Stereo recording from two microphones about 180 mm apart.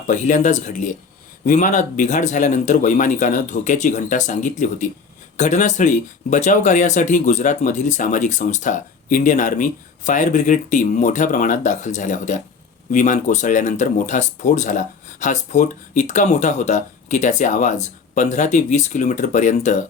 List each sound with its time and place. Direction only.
0.1 s speech: 45° left (ahead or behind)